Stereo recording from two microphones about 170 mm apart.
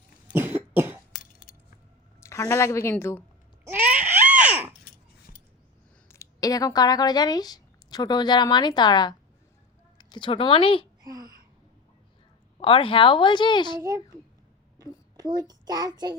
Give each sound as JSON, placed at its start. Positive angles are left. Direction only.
{"t": 0.3, "sound": "cough", "side_deg": -15}
{"t": 2.2, "sound": "a woman's voice", "side_deg": 20}
{"t": 3.6, "sound": "a sound", "side_deg": -10}
{"t": 6.1, "sound": "speech", "side_deg": 20}
{"t": 11.0, "sound": "a sound", "side_deg": -20}
{"t": 12.5, "sound": "speech", "side_deg": 30}
{"t": 13.7, "sound": "child singing", "side_deg": -20}
{"t": 14.8, "sound": "a sound", "side_deg": -20}
{"t": 15.4, "sound": "child singing", "side_deg": -20}